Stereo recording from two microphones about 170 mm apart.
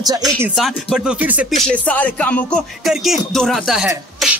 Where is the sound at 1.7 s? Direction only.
10° left (ahead or behind).